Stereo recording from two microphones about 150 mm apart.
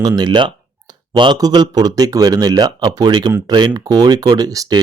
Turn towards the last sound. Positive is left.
turn(degrees=-25)  # may be behind; listen again after turning